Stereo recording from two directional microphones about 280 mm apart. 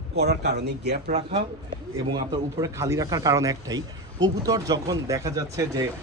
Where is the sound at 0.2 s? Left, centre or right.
Right.